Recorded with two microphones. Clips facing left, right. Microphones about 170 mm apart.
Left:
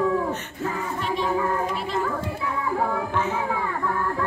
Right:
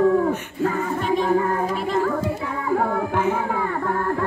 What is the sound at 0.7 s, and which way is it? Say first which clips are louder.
Music: right 3 dB; 45° right (ahead or behind).